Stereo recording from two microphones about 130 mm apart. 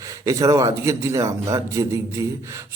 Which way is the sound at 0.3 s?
25° right (ahead or behind).